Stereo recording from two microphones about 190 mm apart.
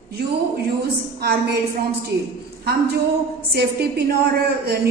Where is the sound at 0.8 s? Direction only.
55° right (ahead or behind).